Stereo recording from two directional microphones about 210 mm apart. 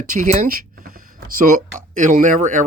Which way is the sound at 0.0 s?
35° right (ahead or behind).